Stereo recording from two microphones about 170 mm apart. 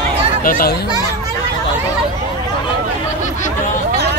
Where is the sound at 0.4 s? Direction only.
55° left (ahead or behind).